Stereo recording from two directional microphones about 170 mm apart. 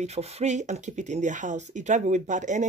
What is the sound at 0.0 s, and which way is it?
Speech, 40° right (ahead or behind).